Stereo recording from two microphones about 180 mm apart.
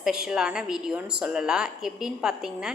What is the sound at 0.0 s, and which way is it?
A woman's voice, 5° right (ahead or behind).